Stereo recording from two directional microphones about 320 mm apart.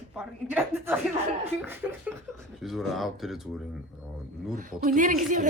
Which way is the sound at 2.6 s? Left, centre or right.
Centre.